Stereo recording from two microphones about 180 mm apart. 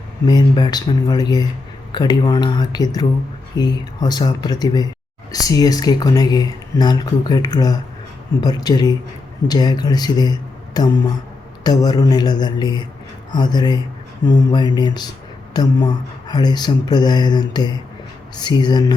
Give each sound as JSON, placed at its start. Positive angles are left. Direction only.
{"t": 0.3, "sound": "speech", "side_deg": 25}